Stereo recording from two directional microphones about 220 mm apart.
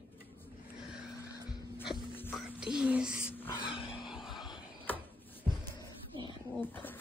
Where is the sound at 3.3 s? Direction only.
10° left (ahead or behind).